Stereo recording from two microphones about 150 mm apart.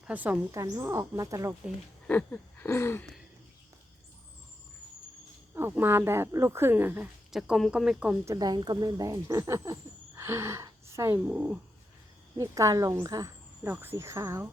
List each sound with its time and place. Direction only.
0.0 s speech: 10° right (ahead or behind)
2.0 s a sound: 10° left (ahead or behind)
5.5 s speech: 15° right (ahead or behind)
7.3 s speech: centre (ahead or behind)
8.2 s speech: 20° right (ahead or behind)
12.4 s speech: 20° right (ahead or behind)